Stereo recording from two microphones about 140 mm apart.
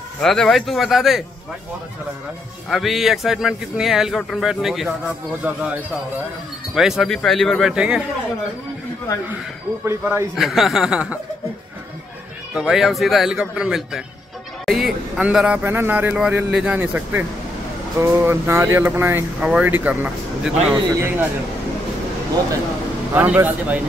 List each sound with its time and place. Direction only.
0.2 s a man's voice: centre (ahead or behind)
2.7 s a man's voice: centre (ahead or behind)
9.8 s a man's voice: 20° right (ahead or behind)
10.3 s a man's voice: centre (ahead or behind)
12.5 s a man's voice: centre (ahead or behind)
23.1 s speech: 10° right (ahead or behind)